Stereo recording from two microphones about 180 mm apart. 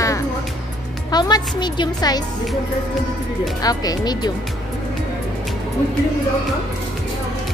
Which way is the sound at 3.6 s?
20° left (ahead or behind).